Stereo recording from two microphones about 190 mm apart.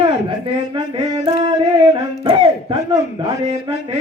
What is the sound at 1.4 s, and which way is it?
A man's voice, 25° right (ahead or behind).